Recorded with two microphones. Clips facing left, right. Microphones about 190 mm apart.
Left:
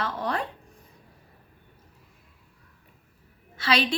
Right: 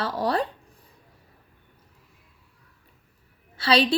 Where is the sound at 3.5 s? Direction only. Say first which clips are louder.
Right 4 dB; 30° right (ahead or behind).